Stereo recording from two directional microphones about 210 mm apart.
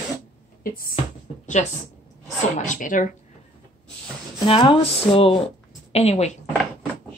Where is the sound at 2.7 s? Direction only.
40° left (ahead or behind).